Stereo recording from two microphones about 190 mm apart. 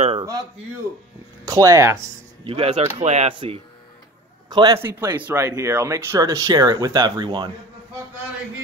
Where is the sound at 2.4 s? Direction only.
35° right (ahead or behind).